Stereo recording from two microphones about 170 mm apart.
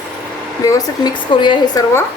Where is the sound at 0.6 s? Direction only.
20° left (ahead or behind).